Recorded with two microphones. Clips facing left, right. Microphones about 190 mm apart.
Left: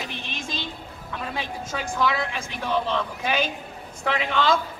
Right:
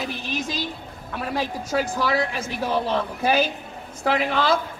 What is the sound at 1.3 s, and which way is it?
Speech, 40° right (ahead or behind).